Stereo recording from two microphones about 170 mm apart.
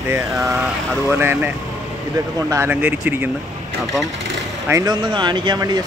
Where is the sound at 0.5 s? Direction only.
Centre (ahead or behind).